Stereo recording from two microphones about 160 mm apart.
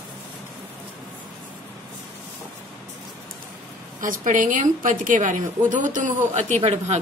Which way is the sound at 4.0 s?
55° right (ahead or behind).